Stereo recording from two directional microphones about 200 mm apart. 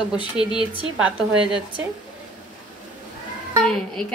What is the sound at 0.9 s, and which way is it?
Speech, 5° right (ahead or behind).